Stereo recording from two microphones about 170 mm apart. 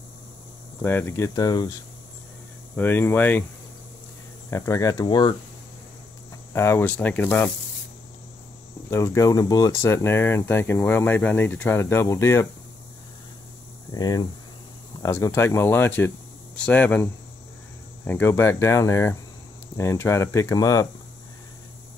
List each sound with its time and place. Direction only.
0.8 s speech: 15° left (ahead or behind)
2.7 s speech: 10° left (ahead or behind)
4.5 s speech: 15° left (ahead or behind)
6.5 s speech: 15° left (ahead or behind)
8.9 s speech: 15° left (ahead or behind)
13.9 s speech: 20° left (ahead or behind)